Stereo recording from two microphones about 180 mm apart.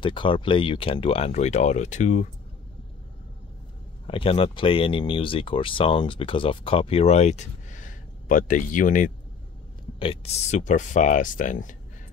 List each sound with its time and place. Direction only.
0.0 s speech: 25° left (ahead or behind)
4.1 s speech: 30° left (ahead or behind); by 9.1 s 45° left (ahead or behind)
9.9 s speech: 30° left (ahead or behind)